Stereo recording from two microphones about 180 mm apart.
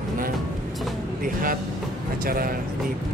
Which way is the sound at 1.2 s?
50° right (ahead or behind).